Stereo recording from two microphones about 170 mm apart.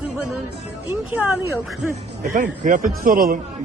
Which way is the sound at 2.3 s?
50° right (ahead or behind).